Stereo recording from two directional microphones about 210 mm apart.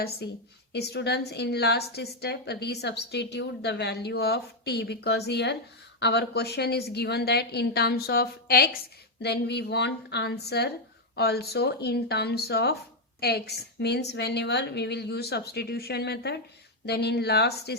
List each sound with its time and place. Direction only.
0.7 s a woman's voice: 55° left (ahead or behind)